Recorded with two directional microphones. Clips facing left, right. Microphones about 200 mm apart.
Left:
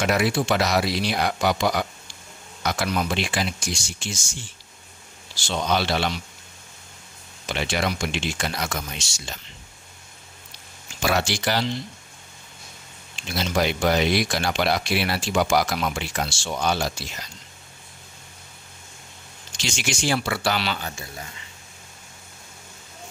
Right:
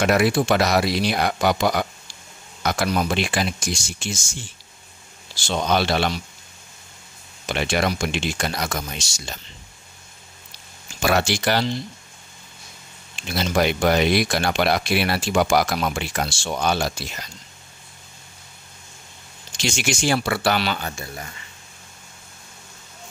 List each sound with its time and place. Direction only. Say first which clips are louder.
0.0 s speech: right 4 dB; 50° right (ahead or behind)
5.5 s speech: right 3 dB; 50° right (ahead or behind)
7.4 s speech: right 3 dB; 50° right (ahead or behind)
11.0 s speech: right 3 dB; 55° right (ahead or behind)
13.4 s speech: right 3 dB; 60° right (ahead or behind)
19.5 s speech: right 4 dB; 50° right (ahead or behind)